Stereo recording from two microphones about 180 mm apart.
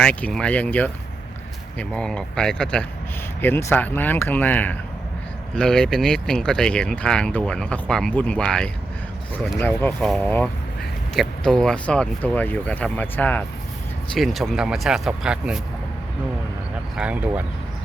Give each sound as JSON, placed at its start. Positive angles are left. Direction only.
{"t": 0.0, "sound": "speech", "side_deg": 5}
{"t": 17.0, "sound": "speech", "side_deg": -10}